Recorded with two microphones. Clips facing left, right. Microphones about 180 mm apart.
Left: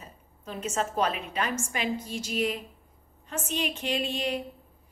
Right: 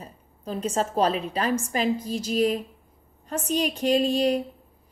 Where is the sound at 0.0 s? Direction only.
35° right (ahead or behind).